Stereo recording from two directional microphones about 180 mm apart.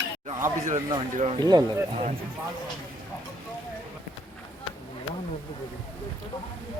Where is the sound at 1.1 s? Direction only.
40° right (ahead or behind).